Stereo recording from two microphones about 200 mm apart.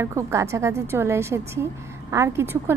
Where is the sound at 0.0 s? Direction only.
15° right (ahead or behind).